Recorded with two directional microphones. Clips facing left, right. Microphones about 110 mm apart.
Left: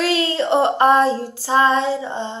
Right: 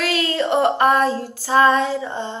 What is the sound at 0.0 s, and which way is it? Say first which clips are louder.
Female singing: left 2 dB; 30° left (ahead or behind).